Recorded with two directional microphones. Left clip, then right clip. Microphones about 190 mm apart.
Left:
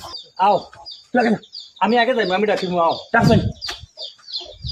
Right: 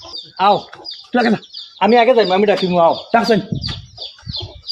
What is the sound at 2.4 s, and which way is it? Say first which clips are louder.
Speech: right 5 dB; 40° right (ahead or behind).